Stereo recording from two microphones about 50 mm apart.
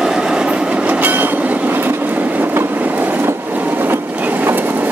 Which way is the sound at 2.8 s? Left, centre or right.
Right.